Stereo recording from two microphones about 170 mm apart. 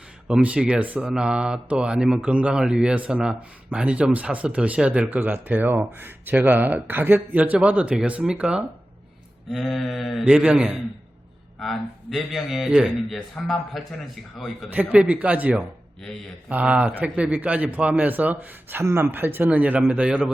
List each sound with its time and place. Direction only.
0.3 s a man's voice: 5° right (ahead or behind)